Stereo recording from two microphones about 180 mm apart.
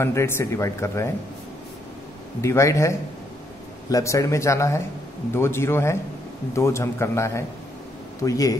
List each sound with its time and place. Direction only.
0.0 s speech: 15° left (ahead or behind)
2.4 s speech: 15° left (ahead or behind)